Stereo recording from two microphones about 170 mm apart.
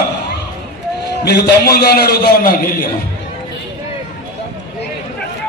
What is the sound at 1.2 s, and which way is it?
A man's voice, 70° left (ahead or behind).